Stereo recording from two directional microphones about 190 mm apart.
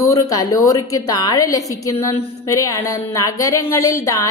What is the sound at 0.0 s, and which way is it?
A woman's voice, 15° left (ahead or behind).